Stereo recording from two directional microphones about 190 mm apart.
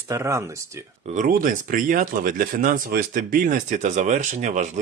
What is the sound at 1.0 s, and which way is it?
Speech, 40° right (ahead or behind).